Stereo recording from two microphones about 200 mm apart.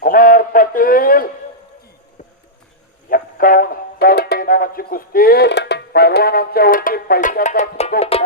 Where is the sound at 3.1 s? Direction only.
45° left (ahead or behind).